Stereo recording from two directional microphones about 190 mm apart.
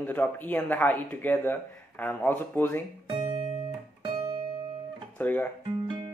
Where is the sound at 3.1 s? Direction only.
25° right (ahead or behind).